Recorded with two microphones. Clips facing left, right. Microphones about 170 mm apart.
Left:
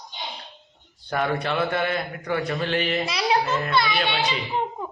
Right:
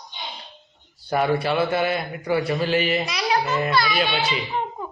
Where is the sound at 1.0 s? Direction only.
10° right (ahead or behind).